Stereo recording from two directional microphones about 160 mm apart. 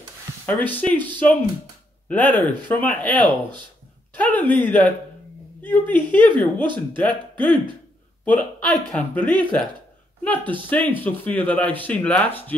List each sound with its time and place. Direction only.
0.5 s speech: 10° left (ahead or behind)
2.0 s speech: 10° left (ahead or behind)
6.3 s speech: 30° right (ahead or behind)
6.9 s speech: 10° left (ahead or behind)
7.4 s speech: 30° right (ahead or behind)
8.3 s speech: 5° left (ahead or behind)